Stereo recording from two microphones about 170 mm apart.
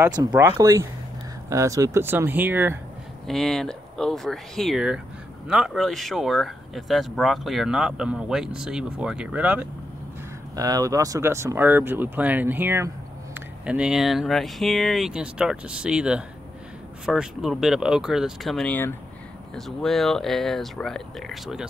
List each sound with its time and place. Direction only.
0.0 s speech: 20° right (ahead or behind)
3.3 s speech: centre (ahead or behind)
10.5 s speech: 20° right (ahead or behind); by 21.6 s centre (ahead or behind)